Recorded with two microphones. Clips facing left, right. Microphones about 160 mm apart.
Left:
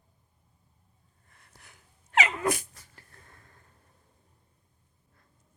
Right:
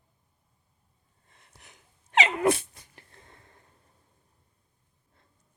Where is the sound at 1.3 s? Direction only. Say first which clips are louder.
Right 1 dB; 20° right (ahead or behind).